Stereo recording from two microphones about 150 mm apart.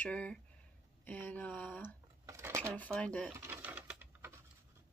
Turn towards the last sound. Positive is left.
turn(degrees=-10)  # may be behind; listen again after turning